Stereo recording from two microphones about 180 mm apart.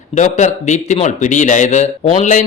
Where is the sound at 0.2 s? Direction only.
40° left (ahead or behind).